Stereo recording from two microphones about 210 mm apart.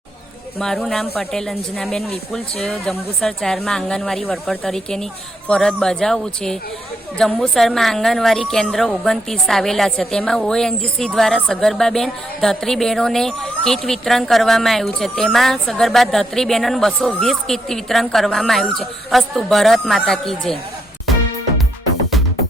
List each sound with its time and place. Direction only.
0.6 s a woman's voice: 5° left (ahead or behind)